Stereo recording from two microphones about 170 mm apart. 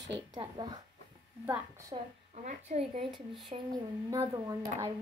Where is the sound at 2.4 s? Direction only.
40° right (ahead or behind).